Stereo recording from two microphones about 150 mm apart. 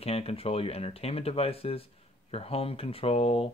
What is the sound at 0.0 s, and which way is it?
Speech, 40° left (ahead or behind).